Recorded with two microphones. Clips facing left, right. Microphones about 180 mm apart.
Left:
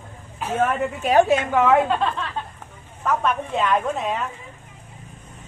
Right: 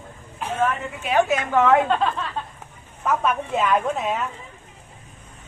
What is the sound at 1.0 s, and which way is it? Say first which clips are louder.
Speech: left 4 dB; 40° left (ahead or behind).